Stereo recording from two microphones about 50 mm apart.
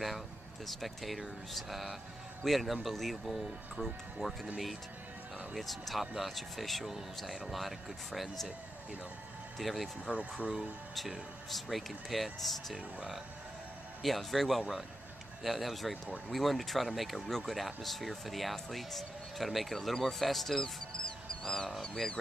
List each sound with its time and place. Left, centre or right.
0.7 s speech: centre
5.6 s speech: centre
9.6 s speech: centre
10.1 s speech: centre
10.4 s speech: right
11.0 s speech: centre
12.7 s speech: centre
14.0 s speech: centre